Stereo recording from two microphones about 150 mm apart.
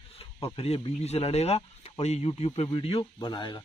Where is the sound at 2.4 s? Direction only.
35° left (ahead or behind).